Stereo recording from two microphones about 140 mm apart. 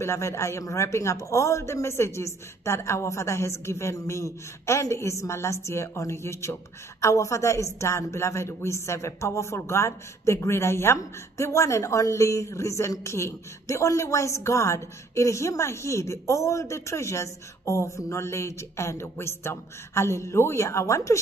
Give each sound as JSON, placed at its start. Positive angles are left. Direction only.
{"t": 0.0, "sound": "a man's voice", "side_deg": 20}